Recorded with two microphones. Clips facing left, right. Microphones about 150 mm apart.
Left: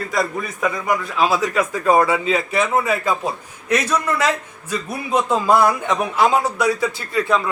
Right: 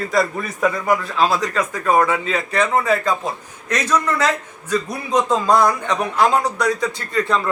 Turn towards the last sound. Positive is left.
turn(degrees=5)  # may be behind; listen again after turning